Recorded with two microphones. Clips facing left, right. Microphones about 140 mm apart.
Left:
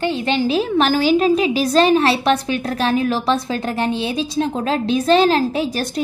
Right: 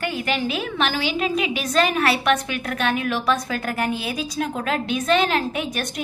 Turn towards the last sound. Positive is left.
turn(degrees=30)  # may be behind; listen again after turning